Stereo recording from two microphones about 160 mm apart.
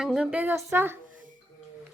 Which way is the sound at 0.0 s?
5° right (ahead or behind).